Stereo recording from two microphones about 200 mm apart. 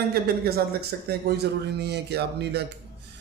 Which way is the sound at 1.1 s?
55° right (ahead or behind).